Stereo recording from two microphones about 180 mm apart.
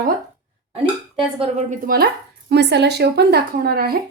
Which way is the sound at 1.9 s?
50° right (ahead or behind).